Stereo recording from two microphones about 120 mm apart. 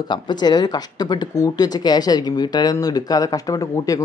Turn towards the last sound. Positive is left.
turn(degrees=30)  # may be behind; listen again after turning